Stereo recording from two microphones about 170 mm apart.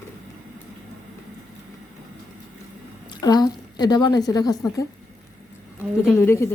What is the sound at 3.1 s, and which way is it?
A woman's voice, 25° left (ahead or behind).